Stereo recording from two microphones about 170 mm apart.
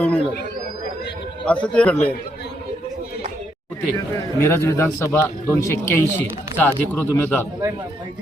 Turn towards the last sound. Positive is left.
turn(degrees=10)  # may be behind; listen again after turning